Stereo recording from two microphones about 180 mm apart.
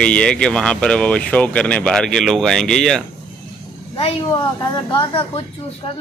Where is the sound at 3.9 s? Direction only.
25° left (ahead or behind).